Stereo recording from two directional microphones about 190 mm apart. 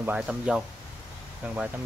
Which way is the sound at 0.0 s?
5° right (ahead or behind).